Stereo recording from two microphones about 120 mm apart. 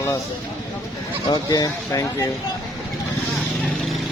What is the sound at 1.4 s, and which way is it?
Speech, 30° left (ahead or behind).